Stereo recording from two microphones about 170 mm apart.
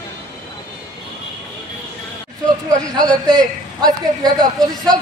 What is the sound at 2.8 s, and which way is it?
A man's voice, 20° right (ahead or behind).